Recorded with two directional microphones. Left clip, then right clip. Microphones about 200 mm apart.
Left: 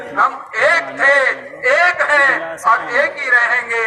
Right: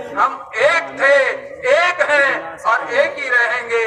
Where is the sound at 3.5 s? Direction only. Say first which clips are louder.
Left 2 dB; 10° left (ahead or behind).